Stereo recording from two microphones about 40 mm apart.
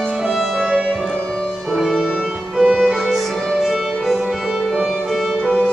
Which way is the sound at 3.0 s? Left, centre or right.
Centre.